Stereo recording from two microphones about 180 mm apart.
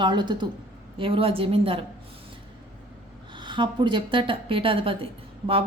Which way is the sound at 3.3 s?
25° right (ahead or behind).